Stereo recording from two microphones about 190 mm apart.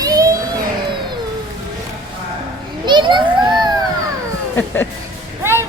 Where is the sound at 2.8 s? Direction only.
25° right (ahead or behind).